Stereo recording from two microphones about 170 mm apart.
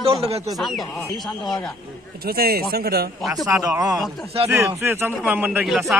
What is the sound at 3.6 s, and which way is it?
A man's voice, 20° right (ahead or behind).